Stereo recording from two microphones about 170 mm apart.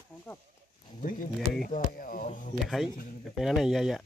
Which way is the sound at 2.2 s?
50° left (ahead or behind).